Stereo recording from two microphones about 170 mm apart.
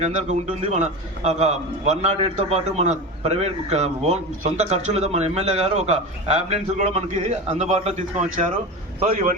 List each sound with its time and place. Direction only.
0.0 s a man's voice: 45° right (ahead or behind)